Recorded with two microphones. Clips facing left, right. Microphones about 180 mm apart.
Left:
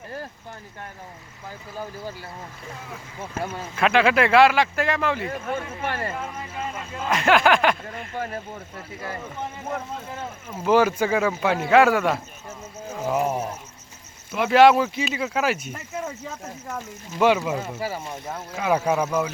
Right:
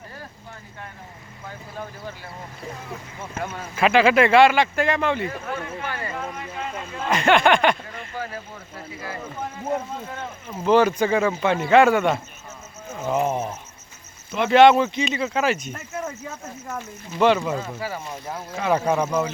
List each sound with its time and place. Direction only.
3.8 s speech: centre (ahead or behind)
5.5 s speech: 25° left (ahead or behind)
7.0 s speech: centre (ahead or behind)
10.5 s speech: 5° left (ahead or behind)